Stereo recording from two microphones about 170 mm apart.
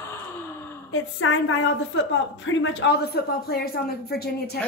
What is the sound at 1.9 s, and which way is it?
Speech, 90° left.